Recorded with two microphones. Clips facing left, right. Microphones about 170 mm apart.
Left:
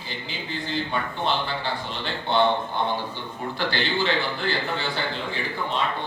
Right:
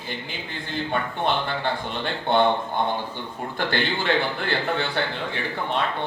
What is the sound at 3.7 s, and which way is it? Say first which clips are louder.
A man's voice: right 2 dB; 55° right (ahead or behind).